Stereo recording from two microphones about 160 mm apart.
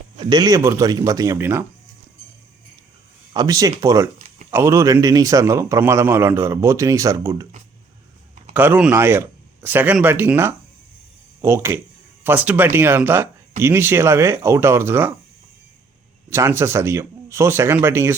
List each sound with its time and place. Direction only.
0.2 s a man's voice: 25° right (ahead or behind)
3.3 s a man's voice: 20° right (ahead or behind)
8.5 s speech: 10° right (ahead or behind)
16.3 s speech: 15° right (ahead or behind)